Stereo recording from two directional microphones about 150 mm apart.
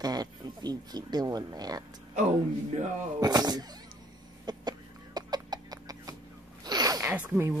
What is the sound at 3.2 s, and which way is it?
Speech, 25° right (ahead or behind).